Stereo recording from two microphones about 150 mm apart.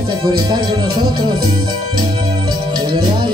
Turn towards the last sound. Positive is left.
turn(degrees=-30)  # may be behind; listen again after turning